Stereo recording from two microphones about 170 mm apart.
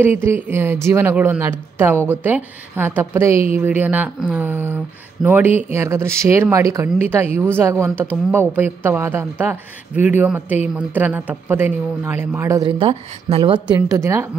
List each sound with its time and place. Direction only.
0.0 s a woman's voice: 15° right (ahead or behind)
12.6 s a woman's voice: 30° right (ahead or behind)
13.7 s a woman's voice: 15° right (ahead or behind)